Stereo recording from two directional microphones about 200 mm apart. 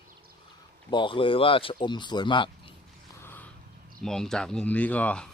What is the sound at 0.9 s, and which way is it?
Speech, 25° left (ahead or behind).